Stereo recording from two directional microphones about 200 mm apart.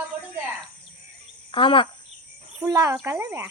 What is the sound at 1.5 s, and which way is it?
Speech, 25° left (ahead or behind).